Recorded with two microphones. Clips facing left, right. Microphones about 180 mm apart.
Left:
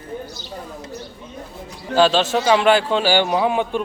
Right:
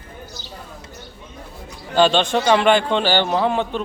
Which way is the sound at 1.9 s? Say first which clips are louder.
Even; 5° left (ahead or behind).